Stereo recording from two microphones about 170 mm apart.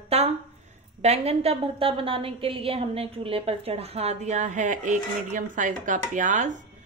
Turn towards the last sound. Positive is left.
turn(degrees=-50)  # may be behind; listen again after turning